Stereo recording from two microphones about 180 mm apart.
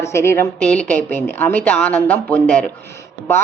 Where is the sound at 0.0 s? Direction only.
15° left (ahead or behind).